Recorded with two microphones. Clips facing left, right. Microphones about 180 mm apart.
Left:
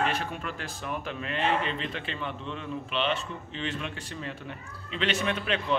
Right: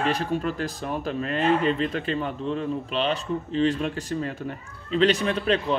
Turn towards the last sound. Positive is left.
turn(degrees=-35)  # may be behind; listen again after turning